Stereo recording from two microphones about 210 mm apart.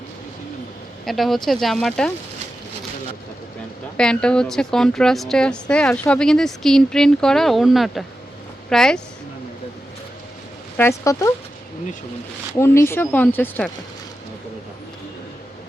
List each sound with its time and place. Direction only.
1.0 s a woman's voice: centre (ahead or behind)
3.9 s a woman's voice: 5° left (ahead or behind)
10.8 s a woman's voice: 15° left (ahead or behind)
12.5 s a woman's voice: 10° left (ahead or behind)